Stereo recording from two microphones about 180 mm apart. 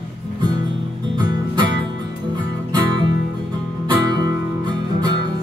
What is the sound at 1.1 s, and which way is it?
Music, 25° right (ahead or behind).